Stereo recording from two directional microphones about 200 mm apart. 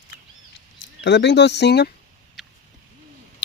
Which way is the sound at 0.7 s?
60° left (ahead or behind).